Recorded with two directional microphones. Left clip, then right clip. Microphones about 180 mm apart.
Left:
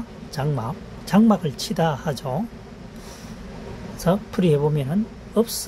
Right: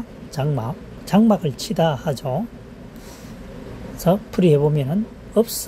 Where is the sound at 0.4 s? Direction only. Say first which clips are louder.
Right 2 dB; 15° right (ahead or behind).